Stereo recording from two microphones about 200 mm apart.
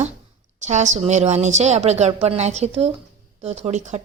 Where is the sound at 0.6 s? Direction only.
35° right (ahead or behind).